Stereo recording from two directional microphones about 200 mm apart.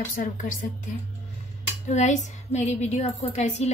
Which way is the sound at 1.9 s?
35° left (ahead or behind).